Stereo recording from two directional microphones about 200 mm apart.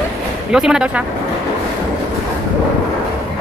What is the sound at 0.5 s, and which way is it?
Speech, 5° right (ahead or behind).